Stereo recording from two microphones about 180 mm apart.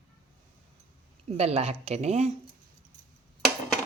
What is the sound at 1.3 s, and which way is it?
Speech, 35° right (ahead or behind).